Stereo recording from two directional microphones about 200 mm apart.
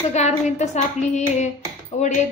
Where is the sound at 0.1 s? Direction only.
35° left (ahead or behind).